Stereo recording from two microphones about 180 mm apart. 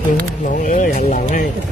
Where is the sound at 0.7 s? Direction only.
50° left (ahead or behind).